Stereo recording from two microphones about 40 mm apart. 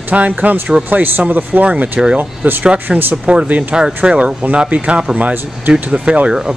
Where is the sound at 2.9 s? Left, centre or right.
Centre.